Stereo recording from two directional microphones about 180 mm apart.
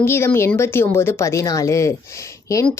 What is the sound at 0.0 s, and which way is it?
Speech, 15° left (ahead or behind).